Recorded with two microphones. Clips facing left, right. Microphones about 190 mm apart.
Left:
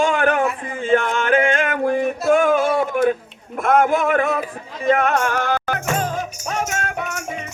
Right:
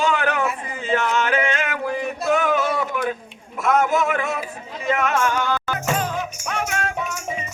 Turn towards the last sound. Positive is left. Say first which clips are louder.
# left 1 dB
turn(degrees=65)  # may be behind; listen again after turning